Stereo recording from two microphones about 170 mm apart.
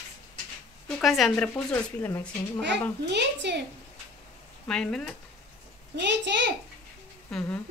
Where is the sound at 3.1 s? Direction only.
90° right.